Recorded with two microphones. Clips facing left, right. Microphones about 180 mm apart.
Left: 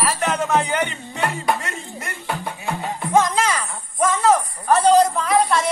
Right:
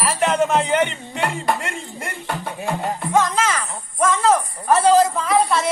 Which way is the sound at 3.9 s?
Centre (ahead or behind).